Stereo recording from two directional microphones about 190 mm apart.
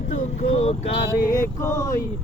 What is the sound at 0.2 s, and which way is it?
Speech, 35° left (ahead or behind).